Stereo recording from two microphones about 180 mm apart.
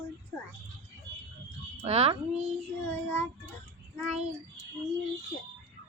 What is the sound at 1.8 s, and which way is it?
Speech, 35° right (ahead or behind).